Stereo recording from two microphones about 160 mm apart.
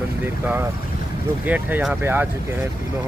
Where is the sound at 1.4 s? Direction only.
10° right (ahead or behind).